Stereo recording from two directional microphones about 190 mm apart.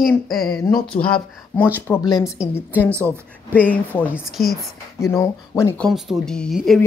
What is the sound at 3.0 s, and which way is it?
Speech, 10° left (ahead or behind).